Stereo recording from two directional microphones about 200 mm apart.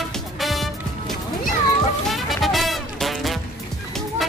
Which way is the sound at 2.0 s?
Centre (ahead or behind).